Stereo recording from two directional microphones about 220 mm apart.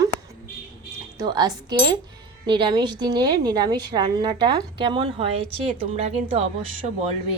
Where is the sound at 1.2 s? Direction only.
20° right (ahead or behind).